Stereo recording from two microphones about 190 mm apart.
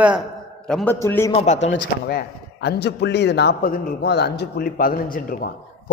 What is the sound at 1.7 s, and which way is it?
A man's voice, 60° left (ahead or behind).